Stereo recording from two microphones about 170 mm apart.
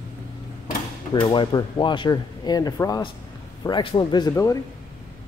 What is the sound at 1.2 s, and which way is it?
Speech, 30° left (ahead or behind).